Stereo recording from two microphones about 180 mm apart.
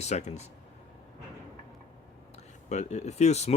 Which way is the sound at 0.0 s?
40° left (ahead or behind).